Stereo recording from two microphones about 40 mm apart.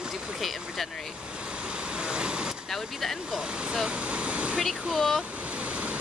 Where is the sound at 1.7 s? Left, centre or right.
Right.